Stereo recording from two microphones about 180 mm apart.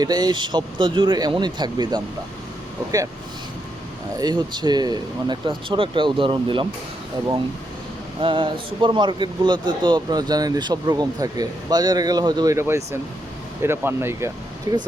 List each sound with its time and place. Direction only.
0.0 s a man's voice: 20° right (ahead or behind)
4.2 s a man's voice: 25° right (ahead or behind)
8.2 s a man's voice: 30° right (ahead or behind); by 14.3 s 15° right (ahead or behind)